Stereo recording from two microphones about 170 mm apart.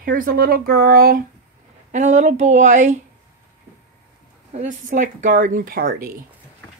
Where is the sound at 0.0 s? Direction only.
55° right (ahead or behind).